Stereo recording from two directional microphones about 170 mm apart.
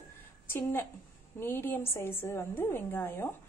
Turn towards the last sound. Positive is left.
turn(degrees=15)  # may be behind; listen again after turning